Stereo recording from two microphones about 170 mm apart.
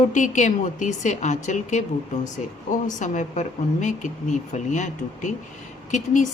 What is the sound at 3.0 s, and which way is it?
Speech, 45° left (ahead or behind).